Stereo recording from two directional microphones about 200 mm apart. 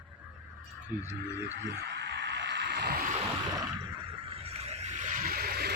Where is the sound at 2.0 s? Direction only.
65° right (ahead or behind).